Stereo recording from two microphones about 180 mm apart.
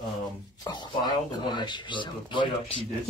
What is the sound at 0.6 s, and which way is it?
Speech, 25° left (ahead or behind).